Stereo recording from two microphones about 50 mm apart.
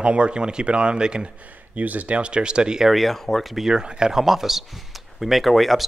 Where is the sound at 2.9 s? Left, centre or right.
Centre.